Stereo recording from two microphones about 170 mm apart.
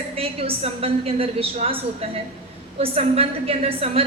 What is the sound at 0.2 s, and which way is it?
A woman's voice, 35° right (ahead or behind).